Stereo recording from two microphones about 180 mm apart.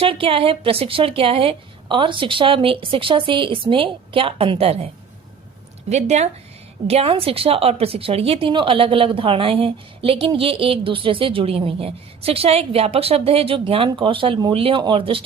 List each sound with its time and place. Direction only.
0.0 s a woman's voice: 30° right (ahead or behind)
5.9 s a woman's voice: 40° right (ahead or behind)